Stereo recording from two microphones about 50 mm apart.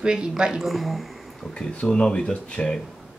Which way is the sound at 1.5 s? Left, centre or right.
Centre.